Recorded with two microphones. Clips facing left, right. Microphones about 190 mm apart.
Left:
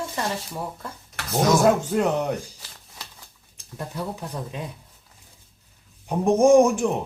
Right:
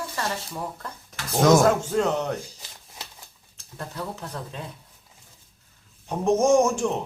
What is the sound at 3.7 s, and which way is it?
Speech, 15° left (ahead or behind).